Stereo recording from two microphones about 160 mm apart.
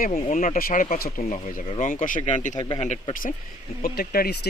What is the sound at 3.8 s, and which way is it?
Speech, 70° left (ahead or behind).